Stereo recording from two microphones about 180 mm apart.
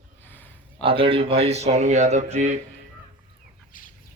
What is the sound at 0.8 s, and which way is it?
Speech, 30° right (ahead or behind).